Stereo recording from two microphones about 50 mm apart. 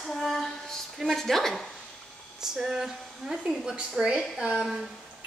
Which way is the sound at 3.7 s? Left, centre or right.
Centre.